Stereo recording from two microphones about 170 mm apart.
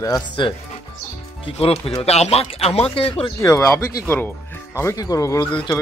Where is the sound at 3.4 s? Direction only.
15° left (ahead or behind).